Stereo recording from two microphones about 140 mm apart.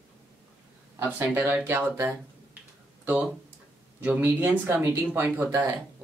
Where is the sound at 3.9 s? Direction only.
15° right (ahead or behind).